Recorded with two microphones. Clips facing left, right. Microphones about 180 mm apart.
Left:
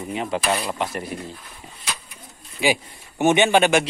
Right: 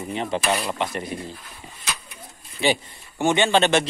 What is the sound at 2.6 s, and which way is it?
A man's voice, 10° left (ahead or behind).